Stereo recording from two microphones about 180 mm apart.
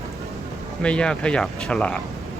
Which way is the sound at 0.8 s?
5° left (ahead or behind).